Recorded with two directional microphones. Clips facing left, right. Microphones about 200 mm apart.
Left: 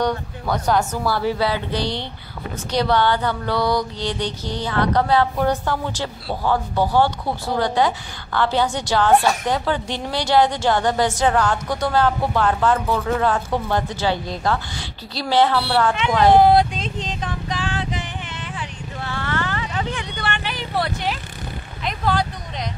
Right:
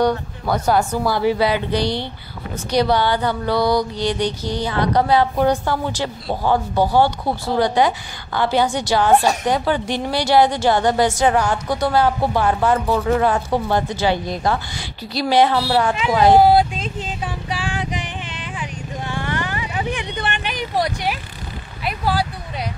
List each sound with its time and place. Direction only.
0.0 s mantra: 10° right (ahead or behind)
13.0 s speech: 10° right (ahead or behind)
21.8 s a sound: 10° right (ahead or behind)